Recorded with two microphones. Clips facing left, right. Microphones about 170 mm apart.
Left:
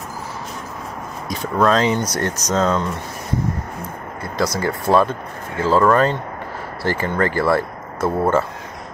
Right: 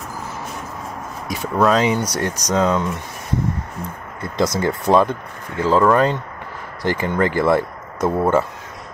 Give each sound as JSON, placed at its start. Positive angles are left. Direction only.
{"t": 1.6, "sound": "speech", "side_deg": -10}
{"t": 4.6, "sound": "speech", "side_deg": -20}